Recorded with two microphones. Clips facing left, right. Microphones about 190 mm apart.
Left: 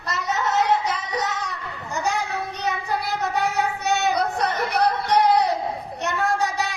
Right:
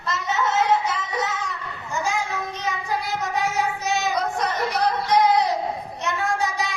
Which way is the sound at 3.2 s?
60° left (ahead or behind).